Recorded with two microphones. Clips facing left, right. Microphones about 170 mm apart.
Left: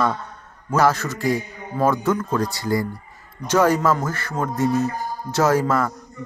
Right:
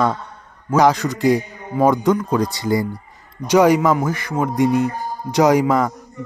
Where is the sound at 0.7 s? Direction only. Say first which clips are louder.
Right 4 dB; 15° right (ahead or behind).